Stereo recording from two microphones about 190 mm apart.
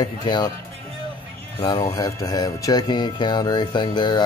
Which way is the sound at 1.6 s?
30° left (ahead or behind).